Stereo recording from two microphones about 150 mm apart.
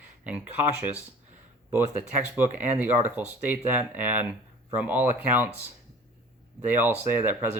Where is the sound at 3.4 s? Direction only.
10° right (ahead or behind).